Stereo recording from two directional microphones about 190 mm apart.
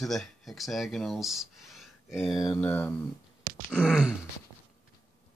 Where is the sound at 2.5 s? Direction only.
10° left (ahead or behind).